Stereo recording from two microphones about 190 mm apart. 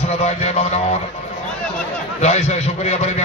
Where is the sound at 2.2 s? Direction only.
35° left (ahead or behind).